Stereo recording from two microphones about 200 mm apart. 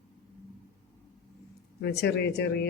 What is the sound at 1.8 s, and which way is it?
Speech, 55° left (ahead or behind).